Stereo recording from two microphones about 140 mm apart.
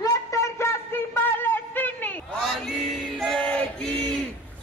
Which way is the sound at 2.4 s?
Centre (ahead or behind).